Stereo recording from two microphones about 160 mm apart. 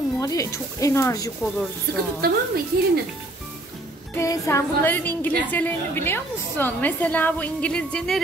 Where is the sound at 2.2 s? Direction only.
70° right (ahead or behind).